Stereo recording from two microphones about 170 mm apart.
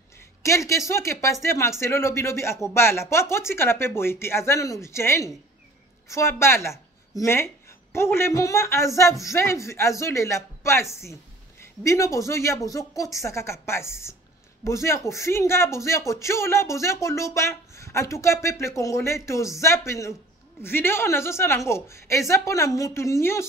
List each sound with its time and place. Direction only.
0.4 s a woman's voice: 15° left (ahead or behind)